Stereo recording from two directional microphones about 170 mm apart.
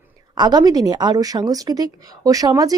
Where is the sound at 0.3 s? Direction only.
25° right (ahead or behind).